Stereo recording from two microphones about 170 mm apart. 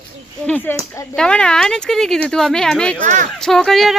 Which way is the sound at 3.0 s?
50° right (ahead or behind).